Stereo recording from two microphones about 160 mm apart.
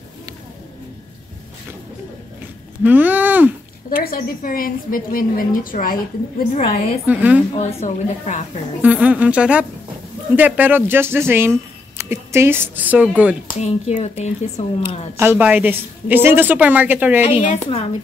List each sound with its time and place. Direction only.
2.8 s a sound: 10° right (ahead or behind)
4.0 s a woman's voice: 65° left (ahead or behind)
6.5 s speech: 45° left (ahead or behind)
7.1 s a woman's voice: 10° right (ahead or behind)
7.6 s speech: 50° left (ahead or behind)
8.8 s a woman's voice: 10° right (ahead or behind)
13.6 s speech: 45° left (ahead or behind)
15.1 s a woman's voice: 10° right (ahead or behind)
17.2 s a woman's voice: 45° left (ahead or behind)